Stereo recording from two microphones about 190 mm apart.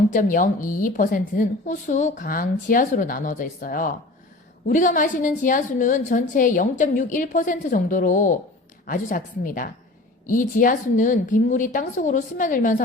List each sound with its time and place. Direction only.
0.1 s a woman's voice: 45° left (ahead or behind)